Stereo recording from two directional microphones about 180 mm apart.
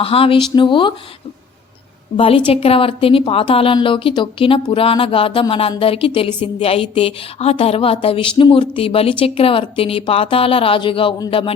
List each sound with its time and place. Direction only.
0.0 s speech: 30° left (ahead or behind)
2.1 s a woman's voice: 30° left (ahead or behind)